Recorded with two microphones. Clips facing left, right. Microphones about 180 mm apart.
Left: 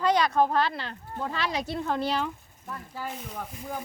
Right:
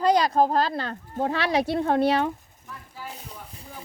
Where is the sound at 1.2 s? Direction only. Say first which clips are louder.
Right 7 dB; 70° right (ahead or behind).